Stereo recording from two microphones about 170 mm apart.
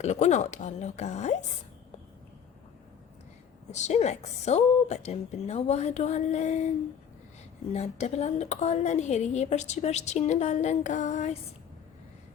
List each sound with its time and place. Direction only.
0.0 s a woman's voice: 45° left (ahead or behind)
3.7 s a woman's voice: 45° left (ahead or behind)
7.7 s a woman's voice: 40° left (ahead or behind)